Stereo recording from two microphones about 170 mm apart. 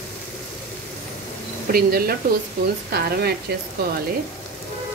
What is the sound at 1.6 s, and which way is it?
Speech, 60° right (ahead or behind).